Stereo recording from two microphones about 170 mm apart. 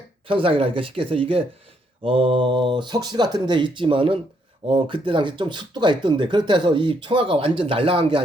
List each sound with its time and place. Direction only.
0.3 s speech: 30° right (ahead or behind)